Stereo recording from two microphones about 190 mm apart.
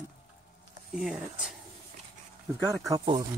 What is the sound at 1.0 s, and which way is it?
Speech, 5° right (ahead or behind).